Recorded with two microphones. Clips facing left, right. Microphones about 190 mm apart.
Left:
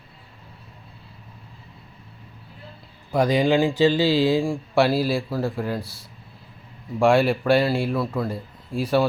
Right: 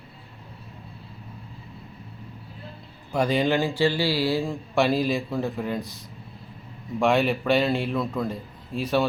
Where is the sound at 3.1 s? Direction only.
10° left (ahead or behind).